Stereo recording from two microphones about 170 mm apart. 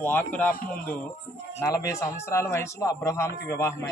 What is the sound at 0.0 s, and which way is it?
A man's voice, 10° left (ahead or behind).